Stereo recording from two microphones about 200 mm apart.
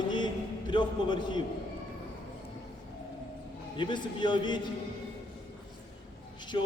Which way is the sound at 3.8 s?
25° left (ahead or behind).